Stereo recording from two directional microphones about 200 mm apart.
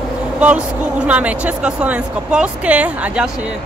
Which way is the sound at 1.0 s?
5° right (ahead or behind).